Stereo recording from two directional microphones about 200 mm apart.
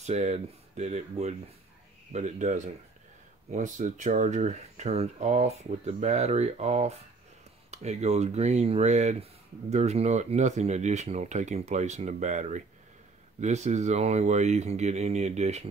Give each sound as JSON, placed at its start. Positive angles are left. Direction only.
{"t": 0.0, "sound": "speech", "side_deg": -35}